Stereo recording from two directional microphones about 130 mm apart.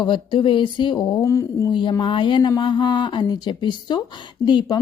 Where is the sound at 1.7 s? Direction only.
40° left (ahead or behind).